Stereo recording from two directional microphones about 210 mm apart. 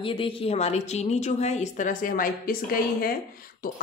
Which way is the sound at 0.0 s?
25° left (ahead or behind).